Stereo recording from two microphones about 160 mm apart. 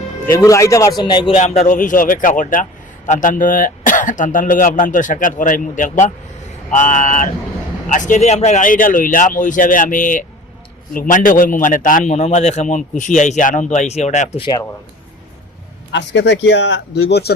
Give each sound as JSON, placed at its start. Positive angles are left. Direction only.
{"t": 0.3, "sound": "speech", "side_deg": 20}
{"t": 1.3, "sound": "a man's voice", "side_deg": 45}
{"t": 15.9, "sound": "speech", "side_deg": 90}